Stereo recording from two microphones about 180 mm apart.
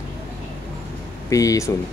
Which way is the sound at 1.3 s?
20° left (ahead or behind).